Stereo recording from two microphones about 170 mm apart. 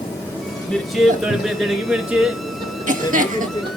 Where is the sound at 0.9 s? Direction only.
Centre (ahead or behind).